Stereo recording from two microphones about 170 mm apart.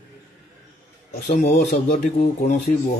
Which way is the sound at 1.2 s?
45° left (ahead or behind).